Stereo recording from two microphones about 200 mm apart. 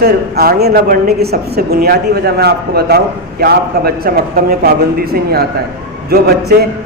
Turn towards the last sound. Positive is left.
turn(degrees=-50)  # may be behind; listen again after turning